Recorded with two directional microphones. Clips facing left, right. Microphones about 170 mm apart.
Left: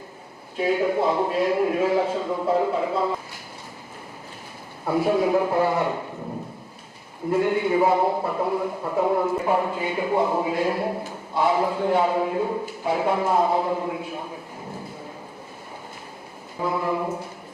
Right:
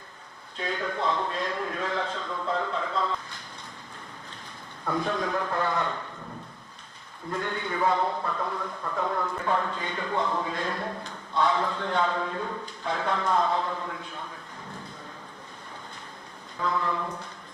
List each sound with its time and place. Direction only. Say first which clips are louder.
0.5 s a man's voice: left 10 dB; 10° left (ahead or behind)
4.9 s a man's voice: left 9 dB; 10° left (ahead or behind)
7.3 s a man's voice: left 10 dB; 10° left (ahead or behind)
8.6 s a man's voice: left 8 dB; 25° left (ahead or behind)
16.6 s a man's voice: left 4 dB; 10° left (ahead or behind)